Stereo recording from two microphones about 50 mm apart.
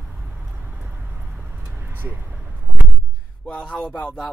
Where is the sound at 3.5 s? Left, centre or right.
Centre.